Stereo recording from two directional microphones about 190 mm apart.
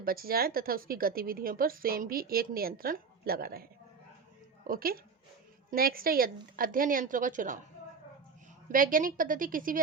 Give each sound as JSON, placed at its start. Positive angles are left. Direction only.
{"t": 0.0, "sound": "a woman's voice", "side_deg": -50}
{"t": 8.7, "sound": "a woman's voice", "side_deg": -45}